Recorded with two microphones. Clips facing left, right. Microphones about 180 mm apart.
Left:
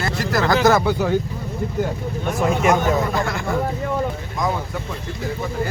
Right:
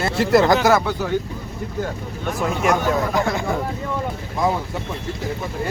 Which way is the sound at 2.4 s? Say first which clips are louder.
Left 2 dB; centre (ahead or behind).